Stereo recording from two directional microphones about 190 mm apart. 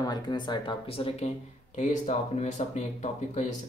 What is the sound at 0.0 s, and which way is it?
Speech, 20° left (ahead or behind).